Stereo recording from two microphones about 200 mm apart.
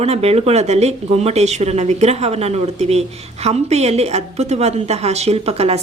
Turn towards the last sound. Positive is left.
turn(degrees=-30)  # may be behind; listen again after turning